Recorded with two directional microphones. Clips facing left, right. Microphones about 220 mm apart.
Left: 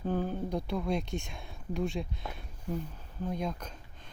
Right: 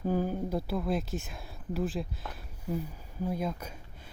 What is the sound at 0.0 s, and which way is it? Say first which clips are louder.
Speech: right 2 dB; 10° right (ahead or behind).